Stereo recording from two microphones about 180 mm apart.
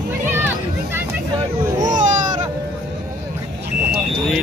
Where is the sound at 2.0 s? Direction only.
45° right (ahead or behind).